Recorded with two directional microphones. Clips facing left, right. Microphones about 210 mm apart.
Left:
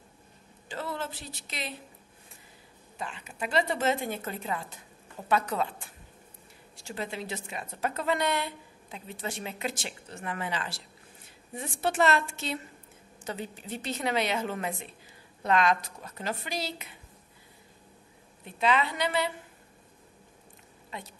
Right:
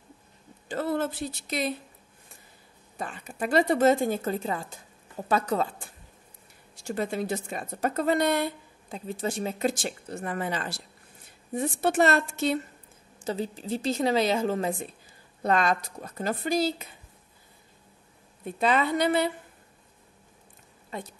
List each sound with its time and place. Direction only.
0.7 s a woman's voice: 50° right (ahead or behind)
3.0 s a woman's voice: 45° right (ahead or behind)
6.9 s a woman's voice: 50° right (ahead or behind)
13.3 s a woman's voice: 35° right (ahead or behind)
18.4 s a woman's voice: 45° right (ahead or behind)